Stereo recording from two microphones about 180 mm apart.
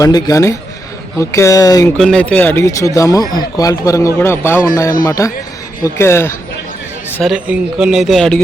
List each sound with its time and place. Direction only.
0.0 s speech: 20° left (ahead or behind)
2.0 s speech: 5° left (ahead or behind)
7.2 s speech: 5° right (ahead or behind)